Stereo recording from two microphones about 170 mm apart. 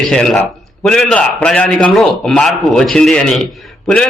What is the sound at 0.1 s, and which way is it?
A man's voice, 5° left (ahead or behind).